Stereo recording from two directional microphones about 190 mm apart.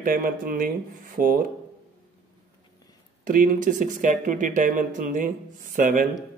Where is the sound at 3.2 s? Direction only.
45° right (ahead or behind).